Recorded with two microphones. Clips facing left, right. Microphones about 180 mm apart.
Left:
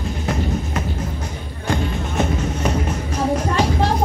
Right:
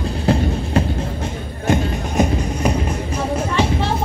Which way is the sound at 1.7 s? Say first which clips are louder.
Right 3 dB; 15° right (ahead or behind).